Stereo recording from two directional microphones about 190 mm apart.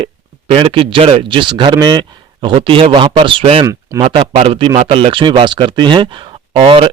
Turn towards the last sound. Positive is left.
turn(degrees=-25)  # may be behind; listen again after turning